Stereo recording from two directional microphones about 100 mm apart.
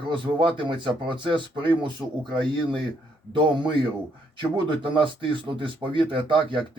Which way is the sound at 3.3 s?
50° right (ahead or behind).